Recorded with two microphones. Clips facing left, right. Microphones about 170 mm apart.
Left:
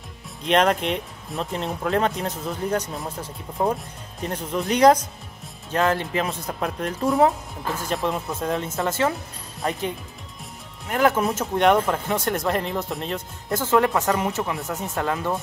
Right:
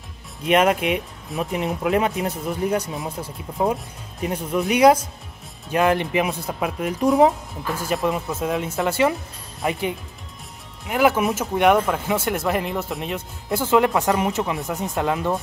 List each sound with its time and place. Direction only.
0.4 s speech: 10° right (ahead or behind)